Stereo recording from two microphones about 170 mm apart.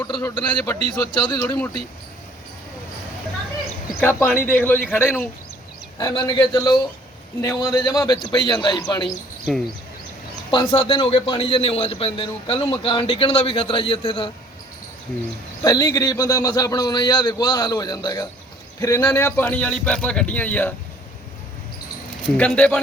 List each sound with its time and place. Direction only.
0.1 s a man's voice: 20° left (ahead or behind)
4.5 s a man's voice: 10° left (ahead or behind)
9.0 s speech: centre (ahead or behind)
10.5 s a man's voice: 25° left (ahead or behind)
15.6 s a man's voice: 20° left (ahead or behind)
22.3 s a man's voice: 5° left (ahead or behind)